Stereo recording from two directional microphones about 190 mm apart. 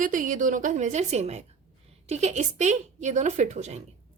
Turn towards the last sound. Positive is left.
turn(degrees=-35)  # may be behind; listen again after turning